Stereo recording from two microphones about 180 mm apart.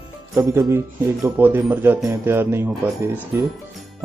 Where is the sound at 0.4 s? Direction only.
15° right (ahead or behind).